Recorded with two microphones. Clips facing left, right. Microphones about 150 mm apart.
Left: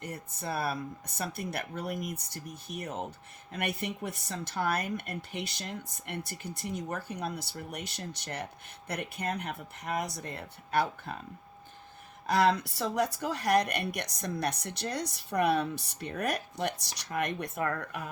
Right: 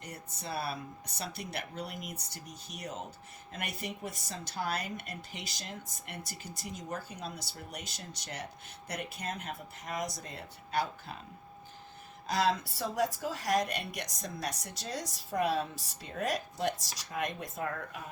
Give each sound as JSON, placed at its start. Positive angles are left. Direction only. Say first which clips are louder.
{"t": 0.0, "sound": "speech", "louder": "left 5 dB", "side_deg": 55}
{"t": 12.3, "sound": "speech", "louder": "left 4 dB", "side_deg": 65}